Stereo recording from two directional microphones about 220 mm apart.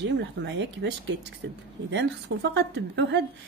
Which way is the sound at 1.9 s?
50° right (ahead or behind).